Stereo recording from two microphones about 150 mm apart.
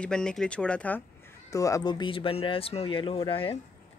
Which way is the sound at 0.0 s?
5° left (ahead or behind).